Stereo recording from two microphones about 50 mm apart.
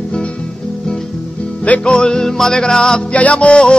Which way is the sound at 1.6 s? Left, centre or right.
Left.